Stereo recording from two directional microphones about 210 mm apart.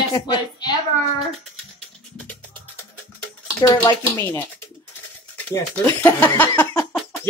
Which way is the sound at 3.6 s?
15° left (ahead or behind).